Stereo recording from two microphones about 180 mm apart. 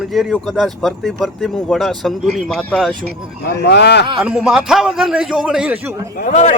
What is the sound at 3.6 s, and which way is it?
Speech, 70° left (ahead or behind).